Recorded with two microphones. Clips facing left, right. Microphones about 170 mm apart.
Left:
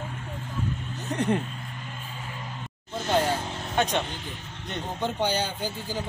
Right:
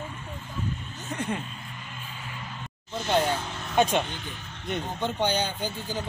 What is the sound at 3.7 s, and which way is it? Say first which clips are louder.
Speech: right 3 dB; 10° right (ahead or behind).